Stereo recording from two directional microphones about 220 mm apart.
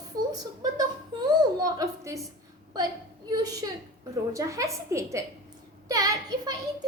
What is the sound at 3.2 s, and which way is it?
A woman's voice, 15° right (ahead or behind).